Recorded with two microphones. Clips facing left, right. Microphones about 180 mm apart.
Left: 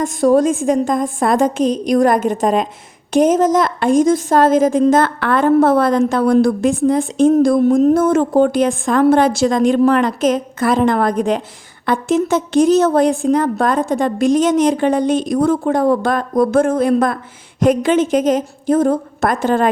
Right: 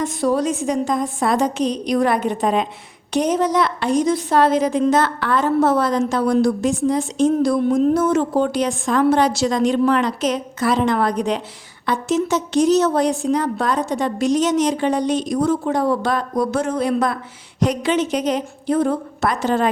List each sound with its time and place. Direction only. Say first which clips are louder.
0.0 s a woman's voice: left 6 dB; 45° left (ahead or behind)